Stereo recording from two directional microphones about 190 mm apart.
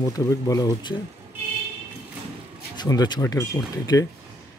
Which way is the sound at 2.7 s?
20° left (ahead or behind).